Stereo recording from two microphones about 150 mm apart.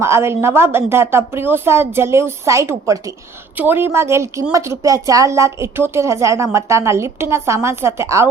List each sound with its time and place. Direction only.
0.0 s a woman's voice: 15° right (ahead or behind)